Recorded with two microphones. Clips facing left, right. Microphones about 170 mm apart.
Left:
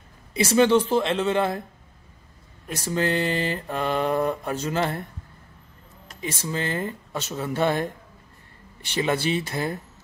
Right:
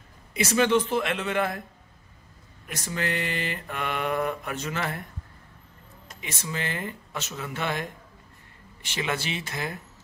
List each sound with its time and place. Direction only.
0.3 s mantra: 30° left (ahead or behind)
2.7 s mantra: 30° left (ahead or behind)
6.2 s mantra: 35° left (ahead or behind)
9.0 s mantra: 35° left (ahead or behind)